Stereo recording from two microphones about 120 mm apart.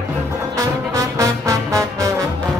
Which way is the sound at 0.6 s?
25° right (ahead or behind).